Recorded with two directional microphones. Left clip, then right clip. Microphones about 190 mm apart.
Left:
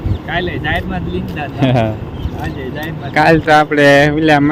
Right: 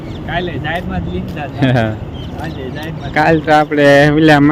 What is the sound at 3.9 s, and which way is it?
Speech, 15° right (ahead or behind).